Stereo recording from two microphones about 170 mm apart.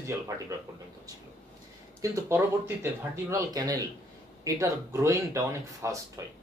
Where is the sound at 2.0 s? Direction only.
15° right (ahead or behind).